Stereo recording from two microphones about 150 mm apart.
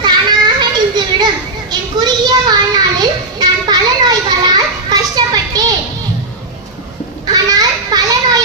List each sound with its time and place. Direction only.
0.0 s children playing: 30° right (ahead or behind)
1.7 s child singing: 30° right (ahead or behind)
7.3 s children playing: 25° right (ahead or behind)